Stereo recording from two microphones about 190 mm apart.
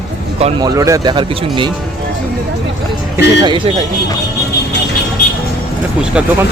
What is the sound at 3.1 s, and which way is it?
Speech, 20° right (ahead or behind).